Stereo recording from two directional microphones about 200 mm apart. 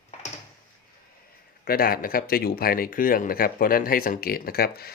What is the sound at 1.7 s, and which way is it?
Speech, 45° left (ahead or behind).